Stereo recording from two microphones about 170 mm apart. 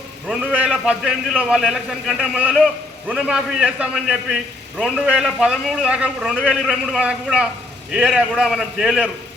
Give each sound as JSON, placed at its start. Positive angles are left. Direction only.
{"t": 0.3, "sound": "a man's voice", "side_deg": -5}